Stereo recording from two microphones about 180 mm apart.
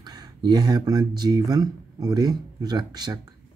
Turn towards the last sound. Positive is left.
turn(degrees=-20)  # may be behind; listen again after turning